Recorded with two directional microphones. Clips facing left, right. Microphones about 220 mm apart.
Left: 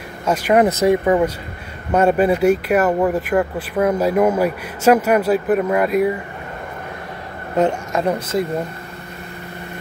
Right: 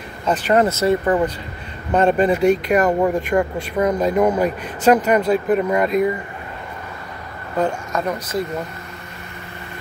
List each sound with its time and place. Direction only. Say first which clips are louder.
0.2 s speech: left 2 dB; 10° left (ahead or behind)
7.5 s speech: left 3 dB; 25° left (ahead or behind)